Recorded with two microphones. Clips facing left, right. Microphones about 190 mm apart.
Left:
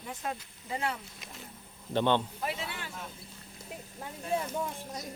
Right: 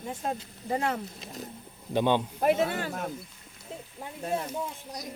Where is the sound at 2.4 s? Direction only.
50° right (ahead or behind).